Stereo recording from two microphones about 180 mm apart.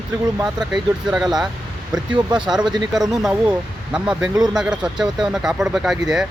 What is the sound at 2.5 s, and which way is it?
Speech, centre (ahead or behind).